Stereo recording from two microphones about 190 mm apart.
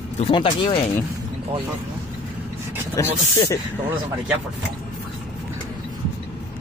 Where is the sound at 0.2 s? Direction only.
30° left (ahead or behind).